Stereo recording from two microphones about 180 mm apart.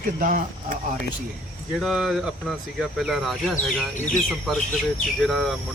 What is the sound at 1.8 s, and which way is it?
Speech, centre (ahead or behind).